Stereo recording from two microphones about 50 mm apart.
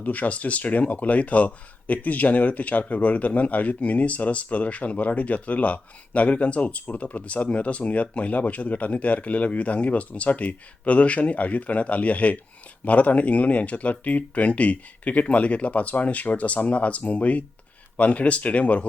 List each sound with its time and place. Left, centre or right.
0.0 s speech: left